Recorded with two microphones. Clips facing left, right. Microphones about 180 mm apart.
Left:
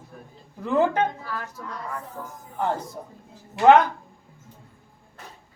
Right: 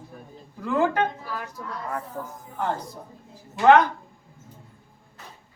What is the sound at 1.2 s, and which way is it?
Speech, 10° right (ahead or behind).